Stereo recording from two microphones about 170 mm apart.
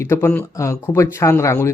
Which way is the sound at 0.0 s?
15° left (ahead or behind).